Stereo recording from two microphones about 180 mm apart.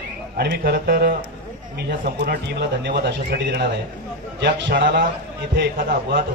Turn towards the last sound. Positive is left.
turn(degrees=-55)  # may be behind; listen again after turning